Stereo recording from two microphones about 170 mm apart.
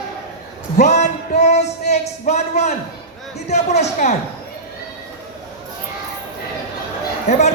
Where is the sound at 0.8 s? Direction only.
40° left (ahead or behind).